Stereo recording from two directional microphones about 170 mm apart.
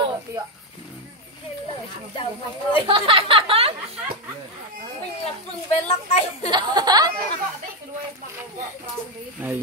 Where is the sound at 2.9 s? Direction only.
30° right (ahead or behind).